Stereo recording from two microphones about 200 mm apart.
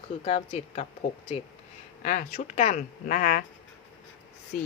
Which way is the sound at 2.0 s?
40° left (ahead or behind).